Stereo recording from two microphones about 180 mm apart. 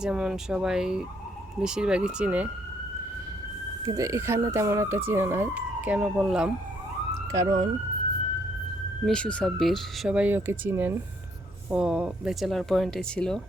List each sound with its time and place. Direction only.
0.0 s speech: 5° right (ahead or behind)
3.8 s speech: 20° right (ahead or behind)
7.1 s police car: 20° right (ahead or behind)
9.0 s speech: 5° left (ahead or behind)